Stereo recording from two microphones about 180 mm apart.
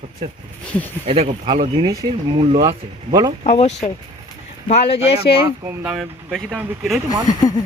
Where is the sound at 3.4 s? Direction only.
35° left (ahead or behind).